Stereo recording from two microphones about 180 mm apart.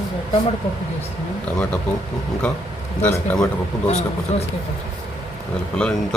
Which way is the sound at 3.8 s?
40° left (ahead or behind).